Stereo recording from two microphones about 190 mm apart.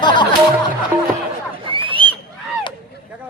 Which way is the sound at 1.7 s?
25° right (ahead or behind).